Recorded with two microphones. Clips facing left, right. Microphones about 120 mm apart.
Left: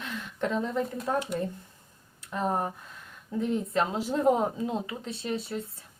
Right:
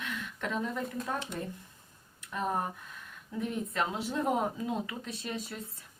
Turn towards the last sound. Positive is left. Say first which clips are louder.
# left 5 dB
turn(degrees=30)  # may be behind; listen again after turning